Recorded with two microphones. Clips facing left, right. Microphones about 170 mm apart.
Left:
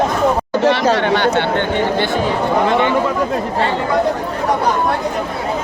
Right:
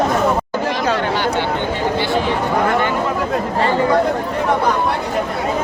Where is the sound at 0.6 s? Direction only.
75° left (ahead or behind).